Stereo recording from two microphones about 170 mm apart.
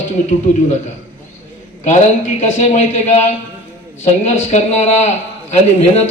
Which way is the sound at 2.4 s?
40° left (ahead or behind).